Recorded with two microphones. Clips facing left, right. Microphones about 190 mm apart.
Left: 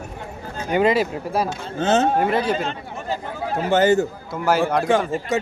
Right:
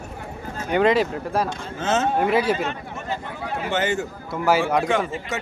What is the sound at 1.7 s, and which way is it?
Speech, 35° left (ahead or behind).